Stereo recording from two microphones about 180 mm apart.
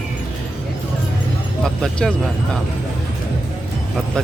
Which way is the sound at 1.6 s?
5° left (ahead or behind).